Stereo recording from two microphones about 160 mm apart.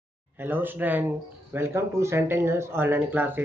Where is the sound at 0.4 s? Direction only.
10° right (ahead or behind).